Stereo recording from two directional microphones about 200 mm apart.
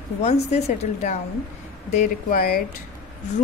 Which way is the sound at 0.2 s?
35° left (ahead or behind).